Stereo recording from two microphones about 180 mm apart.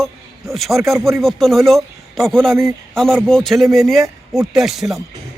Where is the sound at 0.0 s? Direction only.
Centre (ahead or behind).